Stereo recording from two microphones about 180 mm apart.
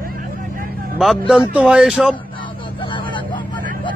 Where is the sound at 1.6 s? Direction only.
5° right (ahead or behind).